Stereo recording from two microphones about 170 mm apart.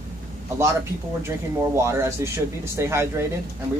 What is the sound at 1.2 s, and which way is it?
Speech, 15° right (ahead or behind).